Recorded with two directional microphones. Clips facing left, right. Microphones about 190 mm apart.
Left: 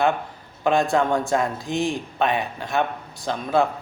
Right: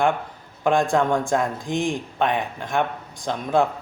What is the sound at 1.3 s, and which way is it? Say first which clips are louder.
Speech: even; 15° right (ahead or behind).